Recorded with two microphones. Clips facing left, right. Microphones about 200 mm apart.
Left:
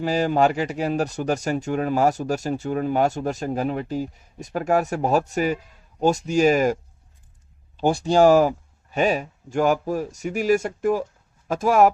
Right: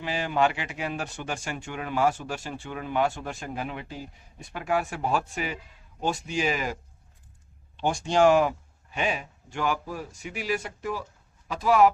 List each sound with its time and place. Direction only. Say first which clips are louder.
0.0 s speech: left 6 dB; 40° left (ahead or behind)
7.8 s speech: left 5 dB; 35° left (ahead or behind)